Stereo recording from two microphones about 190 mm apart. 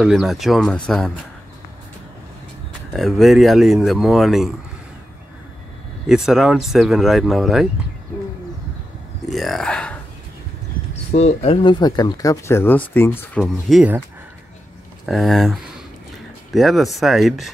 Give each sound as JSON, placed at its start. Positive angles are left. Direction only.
{"t": 0.0, "sound": "a man's voice", "side_deg": 0}
{"t": 2.9, "sound": "a man's voice", "side_deg": 0}
{"t": 6.0, "sound": "a man's voice", "side_deg": 0}
{"t": 9.3, "sound": "a sound", "side_deg": 0}
{"t": 11.1, "sound": "speech", "side_deg": 35}
{"t": 13.4, "sound": "a man's voice", "side_deg": 0}
{"t": 15.0, "sound": "a man's voice", "side_deg": 0}